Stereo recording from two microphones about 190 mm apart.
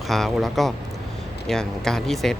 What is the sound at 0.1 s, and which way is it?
Speech, centre (ahead or behind).